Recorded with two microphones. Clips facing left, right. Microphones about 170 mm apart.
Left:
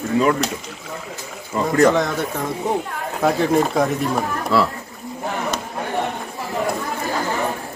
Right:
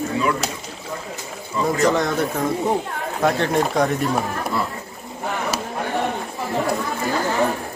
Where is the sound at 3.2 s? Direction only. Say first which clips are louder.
Left 2 dB; centre (ahead or behind).